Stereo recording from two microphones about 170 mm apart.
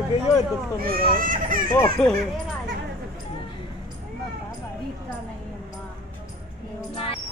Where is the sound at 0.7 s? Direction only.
60° right (ahead or behind).